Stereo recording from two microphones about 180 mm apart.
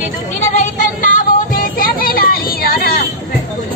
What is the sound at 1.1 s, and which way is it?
Child singing, 50° left (ahead or behind).